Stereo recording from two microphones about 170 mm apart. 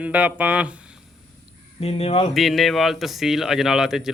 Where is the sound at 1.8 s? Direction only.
35° left (ahead or behind).